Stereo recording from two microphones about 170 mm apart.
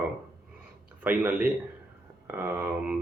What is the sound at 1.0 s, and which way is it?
Speech, 10° right (ahead or behind).